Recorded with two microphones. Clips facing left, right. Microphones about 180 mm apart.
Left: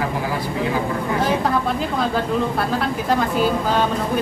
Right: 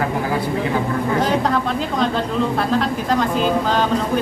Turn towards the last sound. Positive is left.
turn(degrees=10)  # may be behind; listen again after turning